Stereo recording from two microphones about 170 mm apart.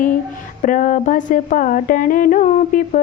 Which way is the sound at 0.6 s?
50° left (ahead or behind).